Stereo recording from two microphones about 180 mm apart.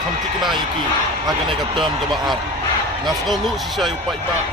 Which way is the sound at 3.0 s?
Centre (ahead or behind).